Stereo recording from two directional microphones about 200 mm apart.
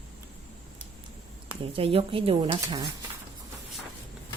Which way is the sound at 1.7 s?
25° right (ahead or behind).